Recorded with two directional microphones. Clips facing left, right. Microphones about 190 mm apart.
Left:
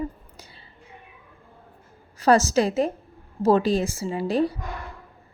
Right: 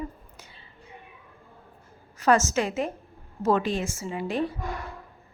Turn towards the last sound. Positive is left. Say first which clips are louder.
# left 5 dB
turn(degrees=35)  # may be behind; listen again after turning